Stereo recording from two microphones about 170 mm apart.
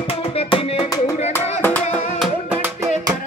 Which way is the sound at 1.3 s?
10° left (ahead or behind).